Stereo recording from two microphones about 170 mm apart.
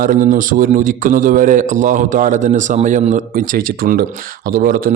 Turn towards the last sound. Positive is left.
turn(degrees=-55)  # may be behind; listen again after turning